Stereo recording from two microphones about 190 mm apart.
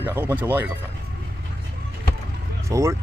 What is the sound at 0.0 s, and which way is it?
Speech, 10° right (ahead or behind).